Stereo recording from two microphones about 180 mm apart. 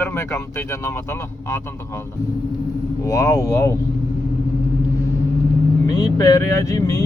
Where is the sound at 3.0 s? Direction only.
20° left (ahead or behind).